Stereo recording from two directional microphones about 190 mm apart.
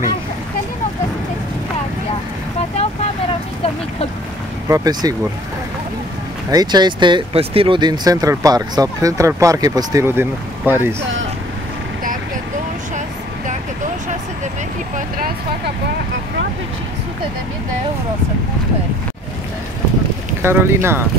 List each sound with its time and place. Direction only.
4.6 s speech: 20° right (ahead or behind)
6.5 s speech: 20° right (ahead or behind)
15.0 s a sound: 50° right (ahead or behind)
20.4 s speech: 10° right (ahead or behind)